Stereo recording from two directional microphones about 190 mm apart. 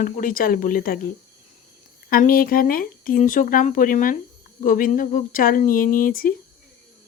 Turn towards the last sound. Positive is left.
turn(degrees=45)  # may be behind; listen again after turning